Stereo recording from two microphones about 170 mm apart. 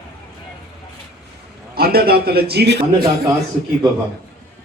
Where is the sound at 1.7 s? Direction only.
65° right (ahead or behind); by 2.8 s 80° right.